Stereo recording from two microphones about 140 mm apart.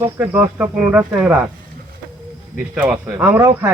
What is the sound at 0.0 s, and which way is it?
Speech, 15° right (ahead or behind).